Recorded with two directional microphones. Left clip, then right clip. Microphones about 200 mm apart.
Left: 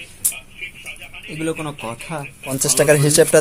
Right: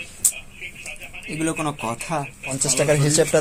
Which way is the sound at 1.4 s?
5° right (ahead or behind).